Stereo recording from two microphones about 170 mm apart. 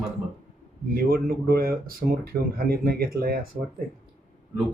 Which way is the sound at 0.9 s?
60° right (ahead or behind).